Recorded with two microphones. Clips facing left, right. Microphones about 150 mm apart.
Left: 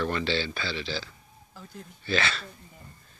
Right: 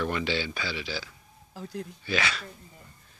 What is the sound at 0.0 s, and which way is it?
A man's voice, 10° right (ahead or behind).